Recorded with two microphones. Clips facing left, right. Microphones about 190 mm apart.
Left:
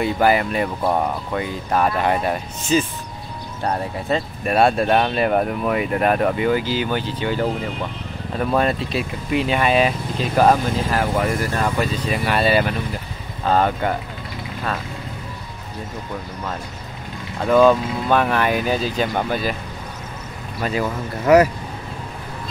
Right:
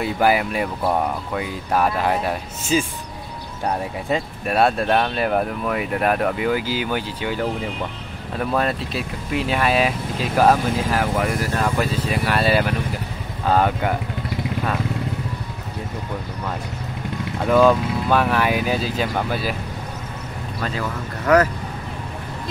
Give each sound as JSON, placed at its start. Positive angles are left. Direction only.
{"t": 0.0, "sound": "speech", "side_deg": -5}
{"t": 8.4, "sound": "speech", "side_deg": 0}
{"t": 17.5, "sound": "speech", "side_deg": -5}
{"t": 20.6, "sound": "speech", "side_deg": 10}